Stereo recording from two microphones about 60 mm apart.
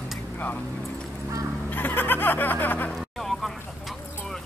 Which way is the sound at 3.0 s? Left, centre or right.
Centre.